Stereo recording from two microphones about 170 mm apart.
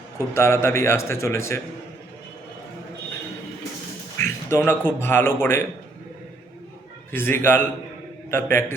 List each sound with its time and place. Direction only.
0.3 s a man's voice: 15° left (ahead or behind)
4.2 s a man's voice: 15° left (ahead or behind)
7.1 s a man's voice: 15° left (ahead or behind)